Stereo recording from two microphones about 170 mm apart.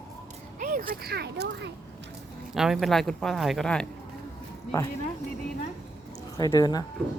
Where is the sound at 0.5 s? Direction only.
55° right (ahead or behind).